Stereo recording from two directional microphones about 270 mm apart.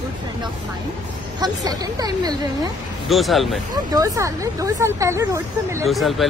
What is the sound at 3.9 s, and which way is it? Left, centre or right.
Speech, centre.